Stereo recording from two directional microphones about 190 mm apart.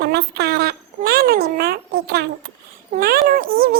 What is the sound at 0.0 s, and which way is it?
A child's voice, 60° right (ahead or behind).